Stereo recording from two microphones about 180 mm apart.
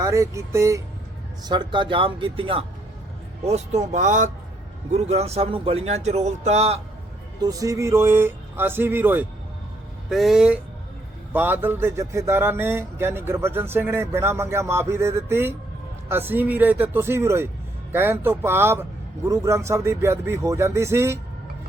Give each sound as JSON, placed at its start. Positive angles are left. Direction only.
{"t": 0.0, "sound": "speech", "side_deg": -15}
{"t": 7.4, "sound": "speech", "side_deg": -20}
{"t": 10.1, "sound": "speech", "side_deg": 0}